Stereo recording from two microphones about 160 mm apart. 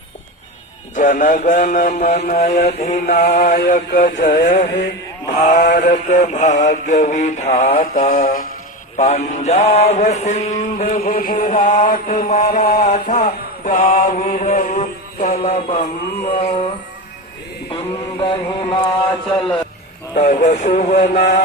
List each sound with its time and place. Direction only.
0.9 s mantra: 50° left (ahead or behind)
9.0 s mantra: 45° left (ahead or behind)
18.4 s mantra: 20° left (ahead or behind)
19.3 s a man's voice: 5° left (ahead or behind)
20.1 s mantra: 45° left (ahead or behind)